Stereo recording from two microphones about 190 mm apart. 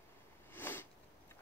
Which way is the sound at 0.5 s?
10° left (ahead or behind).